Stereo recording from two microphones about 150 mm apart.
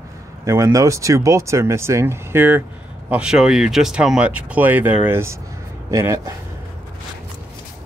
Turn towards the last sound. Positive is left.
turn(degrees=-20)  # may be behind; listen again after turning